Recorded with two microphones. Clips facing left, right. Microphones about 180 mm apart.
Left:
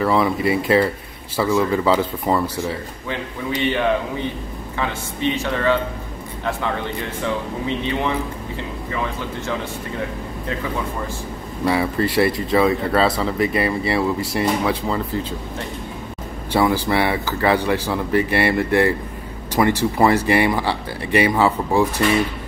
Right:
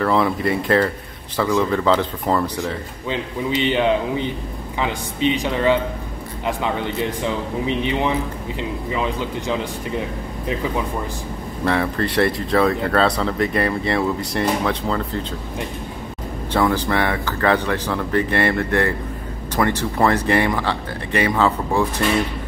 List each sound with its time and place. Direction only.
0.0 s speech: 5° left (ahead or behind)
3.6 s speech: 20° right (ahead or behind)
7.2 s speech: 15° right (ahead or behind)
11.6 s speech: 5° left (ahead or behind)
16.6 s speech: 10° left (ahead or behind)